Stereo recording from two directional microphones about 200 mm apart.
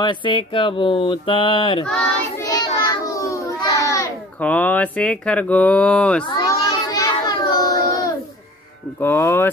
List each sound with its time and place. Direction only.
0.0 s speech: 25° left (ahead or behind)
1.9 s child singing: 5° left (ahead or behind)
2.4 s a sound: 20° left (ahead or behind); by 6.2 s 5° left (ahead or behind)
6.3 s child singing: 20° left (ahead or behind)
9.0 s speech: 10° left (ahead or behind)